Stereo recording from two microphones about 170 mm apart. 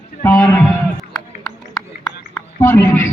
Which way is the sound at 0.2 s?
5° left (ahead or behind).